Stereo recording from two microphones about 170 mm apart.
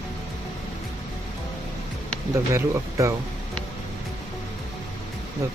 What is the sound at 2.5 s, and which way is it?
Speech, 15° right (ahead or behind).